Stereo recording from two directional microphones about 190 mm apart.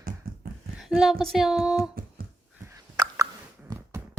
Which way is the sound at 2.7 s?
15° right (ahead or behind).